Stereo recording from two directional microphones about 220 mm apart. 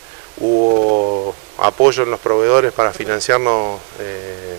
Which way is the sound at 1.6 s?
25° right (ahead or behind).